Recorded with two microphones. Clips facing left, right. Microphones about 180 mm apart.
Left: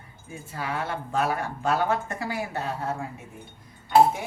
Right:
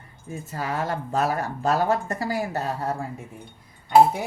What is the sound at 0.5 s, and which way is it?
Speech, 40° right (ahead or behind).